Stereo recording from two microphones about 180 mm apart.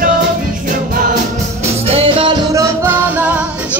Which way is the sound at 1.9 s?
30° right (ahead or behind).